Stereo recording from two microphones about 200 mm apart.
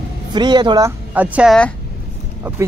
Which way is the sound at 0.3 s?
20° right (ahead or behind).